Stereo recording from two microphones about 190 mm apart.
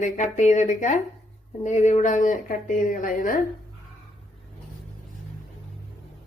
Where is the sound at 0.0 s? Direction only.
40° left (ahead or behind).